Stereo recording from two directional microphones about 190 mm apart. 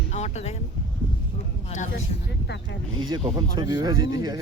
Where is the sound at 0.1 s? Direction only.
35° left (ahead or behind).